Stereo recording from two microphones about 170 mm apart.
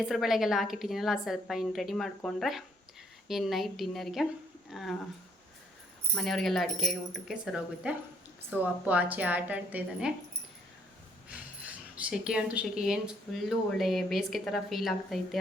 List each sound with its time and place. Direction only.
0.1 s speech: centre (ahead or behind)
6.1 s a woman's voice: centre (ahead or behind)
11.6 s speech: 5° right (ahead or behind)